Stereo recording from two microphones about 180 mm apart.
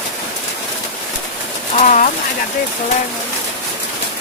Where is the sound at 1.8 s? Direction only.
45° left (ahead or behind).